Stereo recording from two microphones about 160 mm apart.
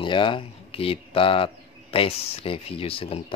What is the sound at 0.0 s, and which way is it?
Speech, 30° left (ahead or behind).